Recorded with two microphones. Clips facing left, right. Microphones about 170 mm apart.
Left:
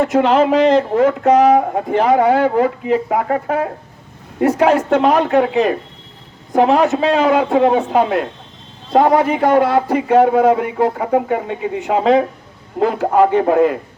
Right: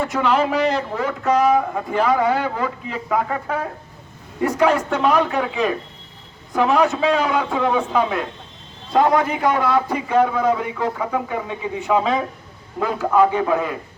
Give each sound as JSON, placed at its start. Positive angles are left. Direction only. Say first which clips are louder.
{"t": 0.0, "sound": "a man's voice", "louder": "left 6 dB", "side_deg": 45}
{"t": 6.9, "sound": "a man's voice", "louder": "left 5 dB", "side_deg": 40}